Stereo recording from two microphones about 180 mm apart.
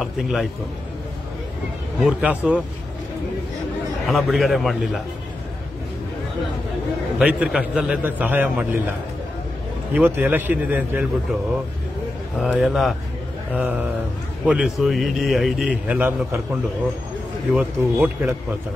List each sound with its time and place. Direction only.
0.0 s a man's voice: centre (ahead or behind)
2.0 s a man's voice: 5° right (ahead or behind)
4.0 s speech: centre (ahead or behind)
7.2 s a man's voice: 5° right (ahead or behind)
9.9 s a man's voice: 10° right (ahead or behind)
12.4 s a man's voice: centre (ahead or behind)
17.6 s a man's voice: 10° right (ahead or behind)